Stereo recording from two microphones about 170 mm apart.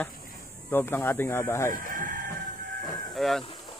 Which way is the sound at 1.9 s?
55° right (ahead or behind).